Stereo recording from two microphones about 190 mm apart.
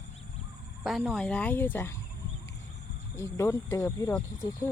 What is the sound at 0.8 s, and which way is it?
Speech, centre (ahead or behind).